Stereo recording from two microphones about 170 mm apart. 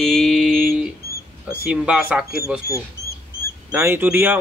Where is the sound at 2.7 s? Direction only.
15° left (ahead or behind).